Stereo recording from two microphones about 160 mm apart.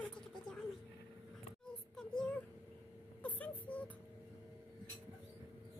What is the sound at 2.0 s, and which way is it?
Child singing, 5° left (ahead or behind).